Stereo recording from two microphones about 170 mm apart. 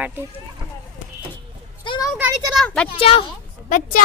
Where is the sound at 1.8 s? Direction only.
25° left (ahead or behind).